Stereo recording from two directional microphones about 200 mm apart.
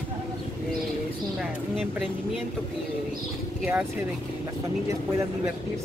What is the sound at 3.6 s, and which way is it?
Speech, 10° right (ahead or behind).